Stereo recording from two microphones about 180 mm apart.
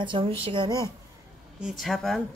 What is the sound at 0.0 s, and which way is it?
Speech, 25° right (ahead or behind).